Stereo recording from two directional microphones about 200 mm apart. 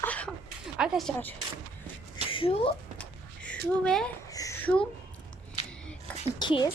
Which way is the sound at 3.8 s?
5° left (ahead or behind).